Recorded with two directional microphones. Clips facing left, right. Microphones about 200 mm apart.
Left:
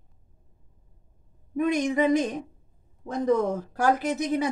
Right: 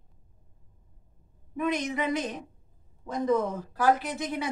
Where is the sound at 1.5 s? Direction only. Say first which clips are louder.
Left 5 dB; 45° left (ahead or behind).